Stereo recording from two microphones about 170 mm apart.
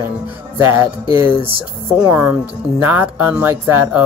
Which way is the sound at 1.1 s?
30° left (ahead or behind).